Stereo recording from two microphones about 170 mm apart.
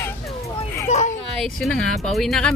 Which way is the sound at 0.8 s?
45° left (ahead or behind).